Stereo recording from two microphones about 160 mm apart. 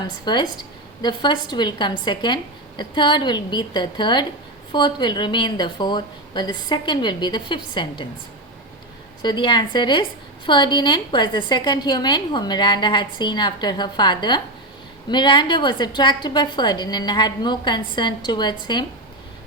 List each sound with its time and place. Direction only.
0.3 s a woman's voice: 25° left (ahead or behind)
9.2 s a woman's voice: 30° left (ahead or behind)